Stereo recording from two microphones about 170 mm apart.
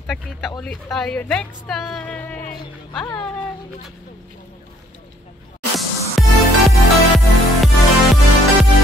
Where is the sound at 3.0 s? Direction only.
25° left (ahead or behind).